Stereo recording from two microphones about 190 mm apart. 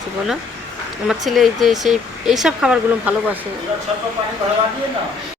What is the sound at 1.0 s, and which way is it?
Speech, centre (ahead or behind).